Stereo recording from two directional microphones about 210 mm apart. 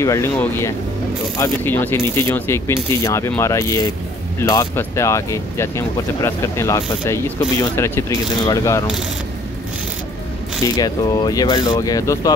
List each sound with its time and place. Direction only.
0.0 s speech: 10° left (ahead or behind)
10.8 s speech: 20° left (ahead or behind)